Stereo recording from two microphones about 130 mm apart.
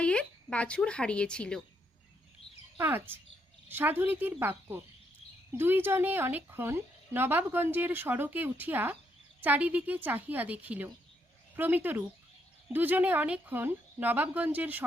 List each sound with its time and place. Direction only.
0.0 s speech: 10° left (ahead or behind)
2.7 s a woman's voice: 15° right (ahead or behind)